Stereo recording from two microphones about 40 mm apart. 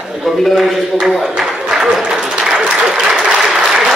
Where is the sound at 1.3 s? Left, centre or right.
Centre.